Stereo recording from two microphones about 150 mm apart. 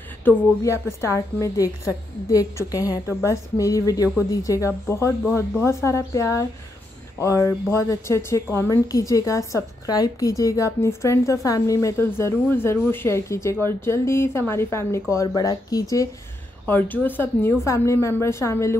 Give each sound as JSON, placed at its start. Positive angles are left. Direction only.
{"t": 0.2, "sound": "a woman's voice", "side_deg": 15}
{"t": 16.6, "sound": "speech", "side_deg": 10}